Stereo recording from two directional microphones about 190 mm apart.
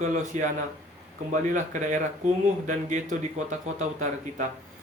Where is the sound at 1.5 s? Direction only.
40° right (ahead or behind).